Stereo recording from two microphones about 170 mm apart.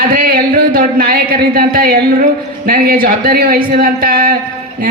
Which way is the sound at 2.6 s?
60° right (ahead or behind).